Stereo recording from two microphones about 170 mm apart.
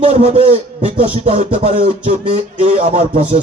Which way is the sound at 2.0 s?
40° right (ahead or behind).